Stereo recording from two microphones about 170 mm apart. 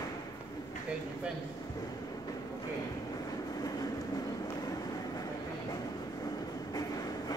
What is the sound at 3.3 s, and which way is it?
Train, 20° left (ahead or behind).